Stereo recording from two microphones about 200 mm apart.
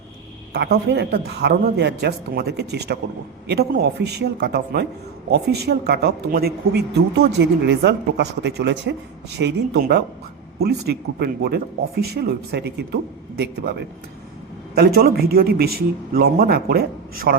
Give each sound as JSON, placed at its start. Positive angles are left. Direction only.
{"t": 0.5, "sound": "a man's voice", "side_deg": -55}